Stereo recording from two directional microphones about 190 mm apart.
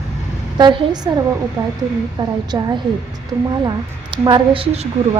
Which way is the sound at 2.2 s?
20° right (ahead or behind).